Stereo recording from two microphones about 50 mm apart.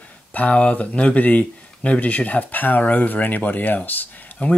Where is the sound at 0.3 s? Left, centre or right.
Left.